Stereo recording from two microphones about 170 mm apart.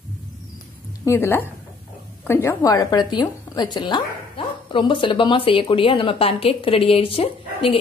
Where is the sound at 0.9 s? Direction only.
15° left (ahead or behind).